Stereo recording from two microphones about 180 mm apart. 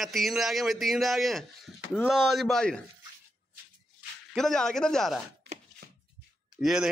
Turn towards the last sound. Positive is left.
turn(degrees=0)  # may be behind; listen again after turning